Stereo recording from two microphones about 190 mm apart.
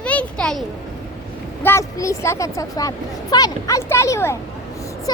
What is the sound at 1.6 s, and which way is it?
A child's voice, 15° left (ahead or behind).